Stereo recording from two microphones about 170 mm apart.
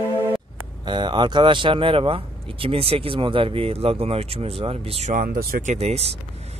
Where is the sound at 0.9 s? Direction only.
25° right (ahead or behind).